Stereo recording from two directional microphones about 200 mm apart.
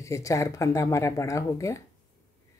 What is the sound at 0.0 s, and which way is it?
Speech, 15° left (ahead or behind).